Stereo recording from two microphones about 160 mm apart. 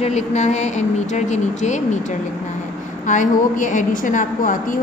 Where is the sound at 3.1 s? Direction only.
50° left (ahead or behind).